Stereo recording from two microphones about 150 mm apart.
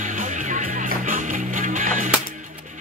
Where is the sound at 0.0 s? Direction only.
60° right (ahead or behind).